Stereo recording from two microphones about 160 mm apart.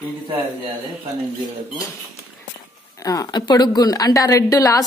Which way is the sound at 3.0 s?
25° left (ahead or behind).